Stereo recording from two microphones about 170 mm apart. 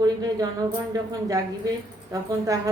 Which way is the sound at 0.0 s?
20° right (ahead or behind).